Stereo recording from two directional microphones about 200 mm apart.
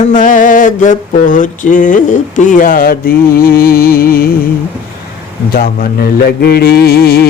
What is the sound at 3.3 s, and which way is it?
Mantra, 50° left (ahead or behind).